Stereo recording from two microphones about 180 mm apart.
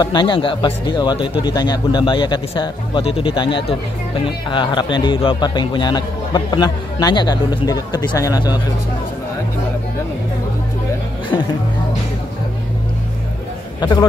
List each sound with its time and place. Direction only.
0.0 s speech: 25° left (ahead or behind)